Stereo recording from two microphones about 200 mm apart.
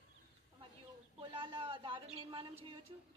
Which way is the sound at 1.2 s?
25° right (ahead or behind).